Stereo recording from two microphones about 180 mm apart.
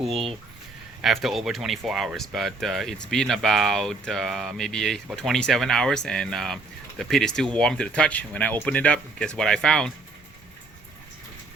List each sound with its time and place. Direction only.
0.1 s speech: 30° right (ahead or behind)
1.0 s speech: centre (ahead or behind)